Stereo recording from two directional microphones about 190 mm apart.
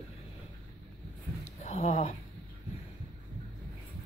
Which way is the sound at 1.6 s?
35° left (ahead or behind).